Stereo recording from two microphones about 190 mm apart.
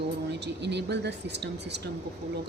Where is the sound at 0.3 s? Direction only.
65° right (ahead or behind).